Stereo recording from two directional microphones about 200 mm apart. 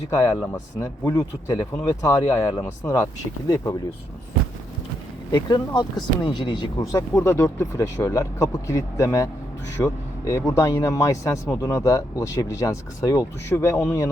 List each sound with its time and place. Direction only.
0.1 s speech: 15° left (ahead or behind)
5.3 s speech: 20° left (ahead or behind)